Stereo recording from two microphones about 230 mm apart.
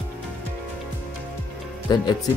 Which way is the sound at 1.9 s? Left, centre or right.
Centre.